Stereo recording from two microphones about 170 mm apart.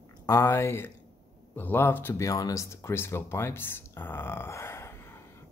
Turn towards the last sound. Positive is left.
turn(degrees=15)  # may be behind; listen again after turning